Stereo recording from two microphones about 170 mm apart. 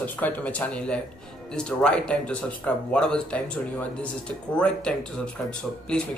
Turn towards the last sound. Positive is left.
turn(degrees=5)  # may be behind; listen again after turning